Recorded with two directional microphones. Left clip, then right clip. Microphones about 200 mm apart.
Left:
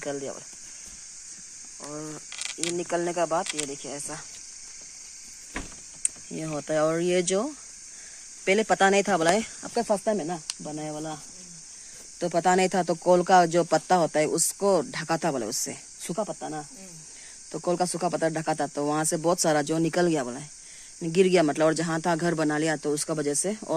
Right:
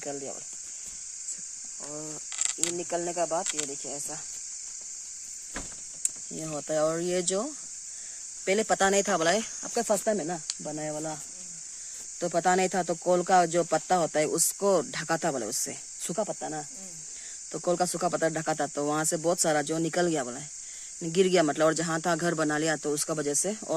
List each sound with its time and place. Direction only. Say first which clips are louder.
0.0 s speech: left 4 dB; centre (ahead or behind)
1.9 s speech: left 3 dB; 5° left (ahead or behind)
2.3 s insect: right 1 dB; 35° right (ahead or behind)
2.7 s speech: left 4 dB; centre (ahead or behind)
3.4 s speech: left 1 dB; 20° right (ahead or behind)
3.7 s speech: left 1 dB; centre (ahead or behind)
6.0 s speech: left 2 dB; 10° right (ahead or behind)
9.8 s speech: left 2 dB; 20° right (ahead or behind)
12.2 s speech: left 2 dB; 15° right (ahead or behind)
16.1 s speech: left 1 dB; 30° right (ahead or behind)
17.5 s speech: left 1 dB; 20° right (ahead or behind)